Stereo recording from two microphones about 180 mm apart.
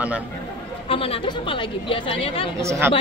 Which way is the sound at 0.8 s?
30° left (ahead or behind).